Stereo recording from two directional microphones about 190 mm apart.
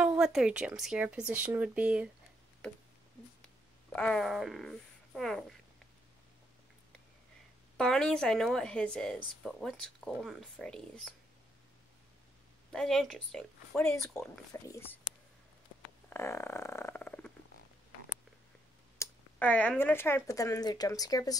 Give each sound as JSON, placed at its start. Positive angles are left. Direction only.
{"t": 0.0, "sound": "speech", "side_deg": -5}
{"t": 3.9, "sound": "speech", "side_deg": 5}
{"t": 7.7, "sound": "speech", "side_deg": 0}
{"t": 12.7, "sound": "speech", "side_deg": 0}
{"t": 14.5, "sound": "speech", "side_deg": 15}
{"t": 16.1, "sound": "speech", "side_deg": 15}
{"t": 18.9, "sound": "speech", "side_deg": 10}